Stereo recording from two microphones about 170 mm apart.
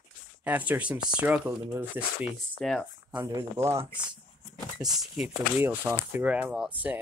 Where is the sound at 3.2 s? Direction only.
20° right (ahead or behind).